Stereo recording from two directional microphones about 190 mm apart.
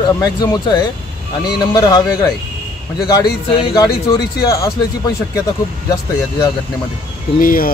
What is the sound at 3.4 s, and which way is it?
Speech, 30° left (ahead or behind).